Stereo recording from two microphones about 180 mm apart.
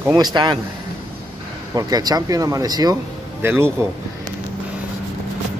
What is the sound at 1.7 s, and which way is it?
Speech, 20° right (ahead or behind).